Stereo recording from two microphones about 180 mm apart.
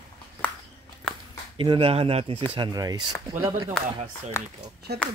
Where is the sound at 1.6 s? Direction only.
30° right (ahead or behind).